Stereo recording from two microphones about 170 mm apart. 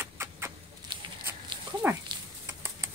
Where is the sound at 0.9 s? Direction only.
25° right (ahead or behind).